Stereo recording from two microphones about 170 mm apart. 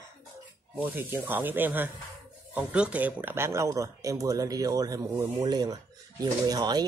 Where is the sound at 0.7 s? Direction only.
10° right (ahead or behind).